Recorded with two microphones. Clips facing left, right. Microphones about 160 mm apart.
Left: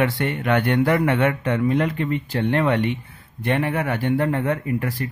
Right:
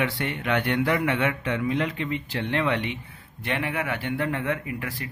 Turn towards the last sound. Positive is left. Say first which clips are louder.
# left 8 dB
turn(degrees=40)  # may be behind; listen again after turning